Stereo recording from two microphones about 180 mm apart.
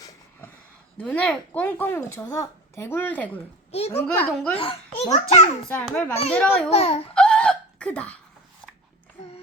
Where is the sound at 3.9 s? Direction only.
5° left (ahead or behind).